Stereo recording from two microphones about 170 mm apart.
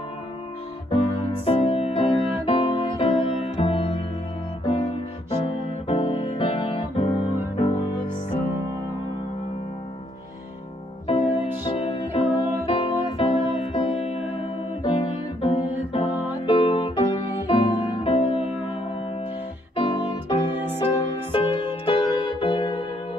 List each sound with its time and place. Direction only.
0.8 s music: 30° left (ahead or behind)
11.1 s music: 35° left (ahead or behind)
19.7 s music: 30° left (ahead or behind)